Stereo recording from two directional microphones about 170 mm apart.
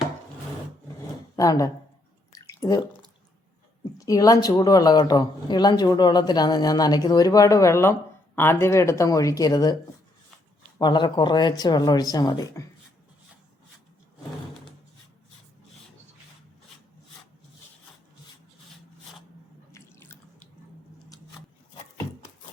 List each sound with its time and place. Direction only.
1.4 s speech: 20° left (ahead or behind)
2.3 s drip: 20° left (ahead or behind)
3.9 s speech: 20° left (ahead or behind)
10.8 s speech: 25° left (ahead or behind)
19.7 s drip: 15° left (ahead or behind)